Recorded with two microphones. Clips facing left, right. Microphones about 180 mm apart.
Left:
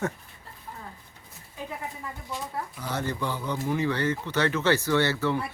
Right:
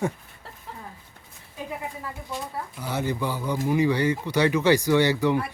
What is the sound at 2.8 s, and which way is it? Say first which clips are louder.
Speech: right 4 dB; 10° right (ahead or behind).